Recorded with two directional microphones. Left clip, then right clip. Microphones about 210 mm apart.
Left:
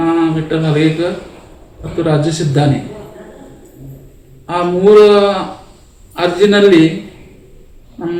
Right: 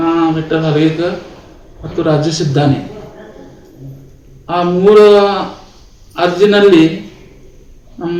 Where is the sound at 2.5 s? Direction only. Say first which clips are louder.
Right 1 dB; 5° right (ahead or behind).